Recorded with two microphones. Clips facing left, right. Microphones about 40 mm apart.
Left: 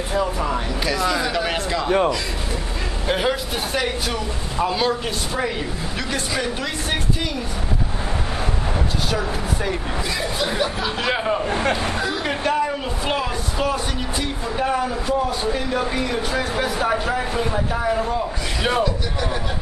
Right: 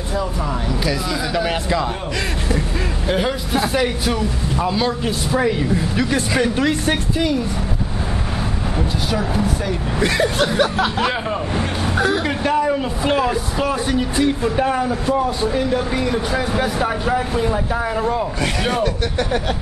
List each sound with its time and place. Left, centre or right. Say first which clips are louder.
0.1 s speech: left 1 dB; centre
3.1 s a man's voice: right 1 dB; centre
6.9 s speech: right 5 dB; centre
9.9 s speech: right 7 dB; right
11.1 s speech: left 1 dB; centre
15.9 s speech: right 3 dB; centre
17.8 s speech: even; centre